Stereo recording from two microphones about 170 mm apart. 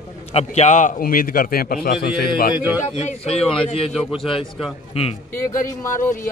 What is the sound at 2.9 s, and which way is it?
Speech, 40° left (ahead or behind).